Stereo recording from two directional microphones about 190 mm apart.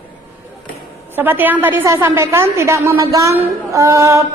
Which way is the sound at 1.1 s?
10° right (ahead or behind).